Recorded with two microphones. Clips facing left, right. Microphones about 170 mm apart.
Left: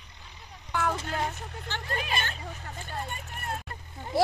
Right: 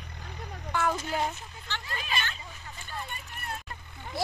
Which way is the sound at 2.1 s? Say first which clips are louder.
Left 2 dB; 45° left (ahead or behind).